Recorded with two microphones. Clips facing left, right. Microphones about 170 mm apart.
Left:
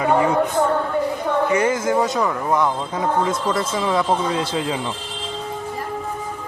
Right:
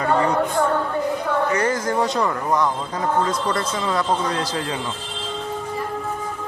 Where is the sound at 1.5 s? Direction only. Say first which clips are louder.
Left 2 dB; 10° left (ahead or behind).